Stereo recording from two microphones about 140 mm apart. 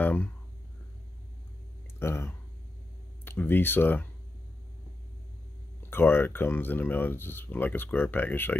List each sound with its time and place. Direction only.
0.0 s speech: 15° left (ahead or behind)
2.0 s speech: 15° left (ahead or behind)
5.8 s speech: 15° left (ahead or behind)